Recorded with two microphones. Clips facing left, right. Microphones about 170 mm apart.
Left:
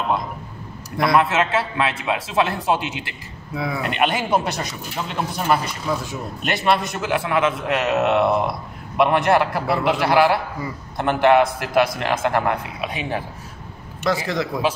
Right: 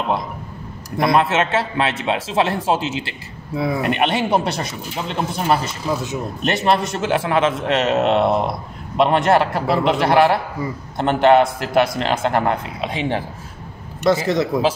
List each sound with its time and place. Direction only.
0.9 s a man's voice: 25° right (ahead or behind)